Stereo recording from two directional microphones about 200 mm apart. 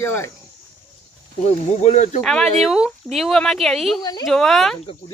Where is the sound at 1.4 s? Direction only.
35° left (ahead or behind).